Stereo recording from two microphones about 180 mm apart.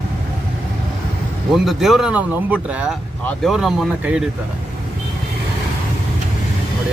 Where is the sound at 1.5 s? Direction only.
Centre (ahead or behind).